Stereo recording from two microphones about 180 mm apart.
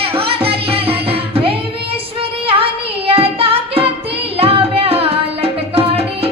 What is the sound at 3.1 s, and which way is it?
Music, 30° right (ahead or behind).